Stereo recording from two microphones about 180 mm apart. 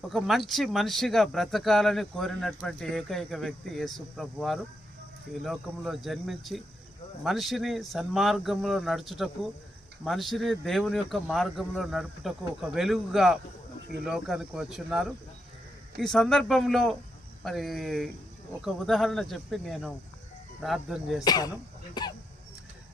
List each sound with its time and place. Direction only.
0.1 s speech: centre (ahead or behind)
21.2 s speech: 20° left (ahead or behind)